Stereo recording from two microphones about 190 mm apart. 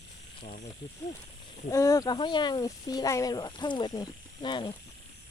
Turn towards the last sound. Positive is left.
turn(degrees=25)  # may be behind; listen again after turning